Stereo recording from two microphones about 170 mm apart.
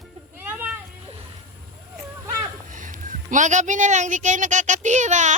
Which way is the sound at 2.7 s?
50° right (ahead or behind).